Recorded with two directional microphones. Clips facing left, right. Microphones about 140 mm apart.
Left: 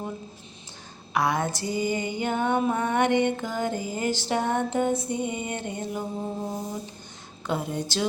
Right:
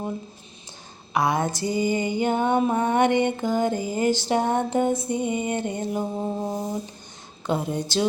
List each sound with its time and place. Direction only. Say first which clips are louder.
1.1 s music: right 2 dB; 15° right (ahead or behind)
7.4 s a woman's voice: right 3 dB; 25° right (ahead or behind)